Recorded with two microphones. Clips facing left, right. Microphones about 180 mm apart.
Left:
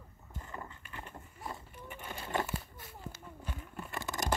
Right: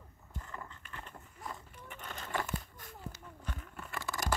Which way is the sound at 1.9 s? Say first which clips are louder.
Left 2 dB; 10° left (ahead or behind).